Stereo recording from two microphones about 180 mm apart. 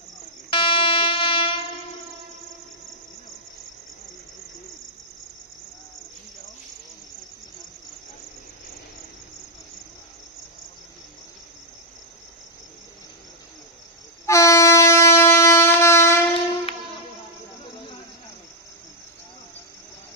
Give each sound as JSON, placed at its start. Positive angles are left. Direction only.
{"t": 0.5, "sound": "train", "side_deg": 30}
{"t": 14.2, "sound": "train", "side_deg": 15}